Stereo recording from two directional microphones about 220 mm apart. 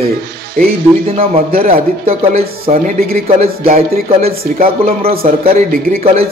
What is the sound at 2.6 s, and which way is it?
Speech, 40° right (ahead or behind).